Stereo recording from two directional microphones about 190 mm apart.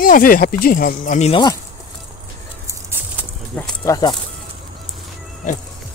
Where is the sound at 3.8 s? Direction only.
20° left (ahead or behind).